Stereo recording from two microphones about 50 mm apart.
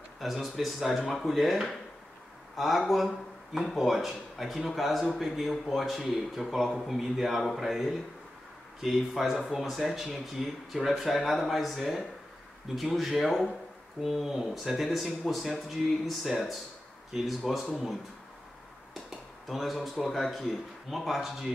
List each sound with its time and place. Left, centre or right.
0.2 s a man's voice: centre
19.0 s speech: centre